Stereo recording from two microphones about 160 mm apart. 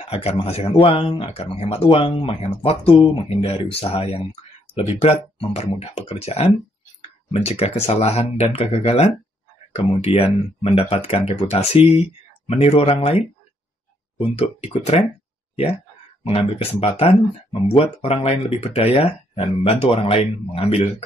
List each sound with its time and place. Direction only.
0.0 s speech: 40° left (ahead or behind)
10.1 s speech: 35° left (ahead or behind)
16.3 s speech: 40° left (ahead or behind)